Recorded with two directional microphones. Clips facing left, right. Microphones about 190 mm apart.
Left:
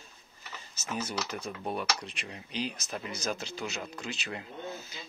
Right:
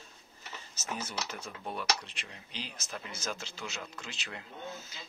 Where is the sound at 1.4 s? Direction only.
15° left (ahead or behind).